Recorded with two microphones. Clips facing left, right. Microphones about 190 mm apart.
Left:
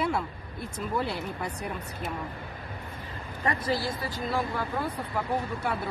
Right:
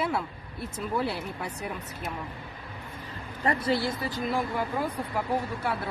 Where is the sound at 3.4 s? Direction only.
25° right (ahead or behind).